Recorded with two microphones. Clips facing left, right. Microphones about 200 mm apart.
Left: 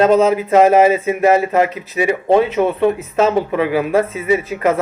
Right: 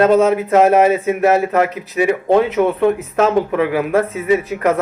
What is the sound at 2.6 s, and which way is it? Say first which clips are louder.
Speech: right 1 dB; 15° left (ahead or behind).